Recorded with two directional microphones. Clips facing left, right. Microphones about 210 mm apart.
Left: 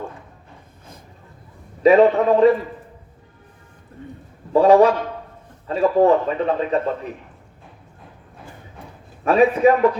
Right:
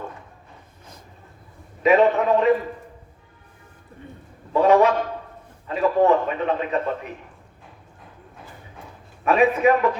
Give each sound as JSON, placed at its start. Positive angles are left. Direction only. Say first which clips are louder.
{"t": 1.8, "sound": "speech", "louder": "left 4 dB", "side_deg": 35}
{"t": 4.5, "sound": "speech", "louder": "left 4 dB", "side_deg": 35}
{"t": 9.2, "sound": "speech", "louder": "left 3 dB", "side_deg": 35}